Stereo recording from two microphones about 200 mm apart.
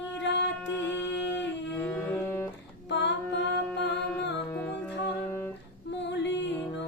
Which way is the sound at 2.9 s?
60° left (ahead or behind).